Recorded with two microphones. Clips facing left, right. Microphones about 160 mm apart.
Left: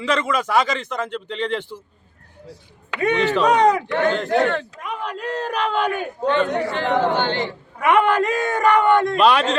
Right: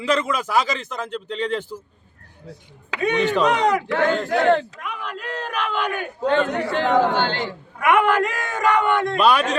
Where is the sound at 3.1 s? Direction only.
15° right (ahead or behind).